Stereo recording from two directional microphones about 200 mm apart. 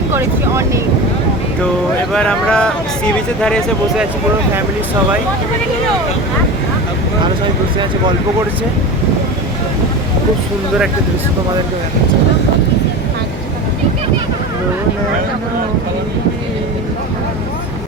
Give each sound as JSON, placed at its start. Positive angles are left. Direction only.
{"t": 0.1, "sound": "speech", "side_deg": -15}
{"t": 2.1, "sound": "speech", "side_deg": 5}